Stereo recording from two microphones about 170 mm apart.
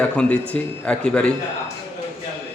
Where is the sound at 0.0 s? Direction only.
10° left (ahead or behind).